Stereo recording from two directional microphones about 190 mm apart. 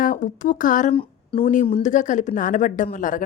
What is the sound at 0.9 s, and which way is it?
Speech, 30° left (ahead or behind).